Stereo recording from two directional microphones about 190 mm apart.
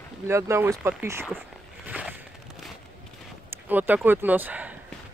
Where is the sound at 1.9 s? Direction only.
5° right (ahead or behind).